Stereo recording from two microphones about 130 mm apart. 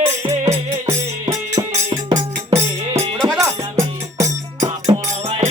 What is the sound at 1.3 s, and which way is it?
Music, 25° right (ahead or behind).